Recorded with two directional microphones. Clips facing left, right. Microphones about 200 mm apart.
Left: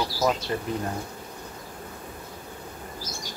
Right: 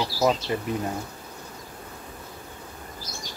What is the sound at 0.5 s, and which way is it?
Speech, 15° right (ahead or behind).